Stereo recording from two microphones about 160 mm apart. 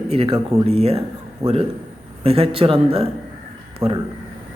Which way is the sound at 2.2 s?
35° right (ahead or behind).